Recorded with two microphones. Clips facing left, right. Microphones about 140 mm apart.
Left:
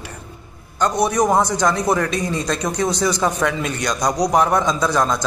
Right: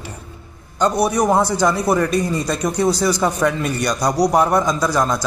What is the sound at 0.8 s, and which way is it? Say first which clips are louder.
A man's voice: right 1 dB; 10° right (ahead or behind).